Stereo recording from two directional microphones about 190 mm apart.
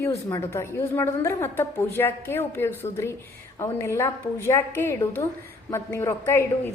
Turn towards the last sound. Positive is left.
turn(degrees=15)  # may be behind; listen again after turning